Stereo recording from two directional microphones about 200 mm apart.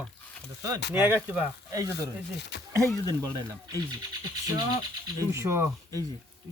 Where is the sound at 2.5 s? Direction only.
60° left (ahead or behind).